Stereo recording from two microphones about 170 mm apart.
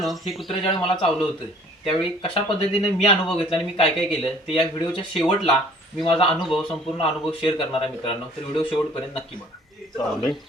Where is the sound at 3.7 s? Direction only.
35° left (ahead or behind).